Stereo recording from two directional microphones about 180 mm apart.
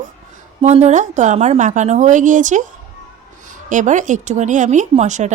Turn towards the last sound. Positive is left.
turn(degrees=-40)  # may be behind; listen again after turning